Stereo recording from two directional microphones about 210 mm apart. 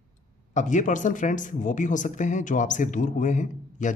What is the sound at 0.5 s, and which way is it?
Speech, 35° left (ahead or behind).